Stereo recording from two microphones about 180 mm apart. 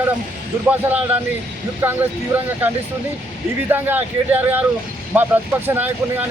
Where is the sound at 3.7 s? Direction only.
10° right (ahead or behind).